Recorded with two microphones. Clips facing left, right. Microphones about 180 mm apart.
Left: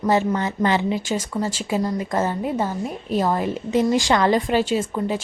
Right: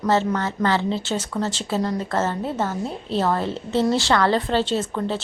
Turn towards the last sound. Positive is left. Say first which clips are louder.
# left 1 dB
turn(degrees=10)  # may be behind; listen again after turning